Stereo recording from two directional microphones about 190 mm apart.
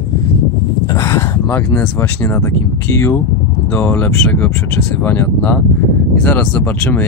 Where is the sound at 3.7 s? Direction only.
10° left (ahead or behind).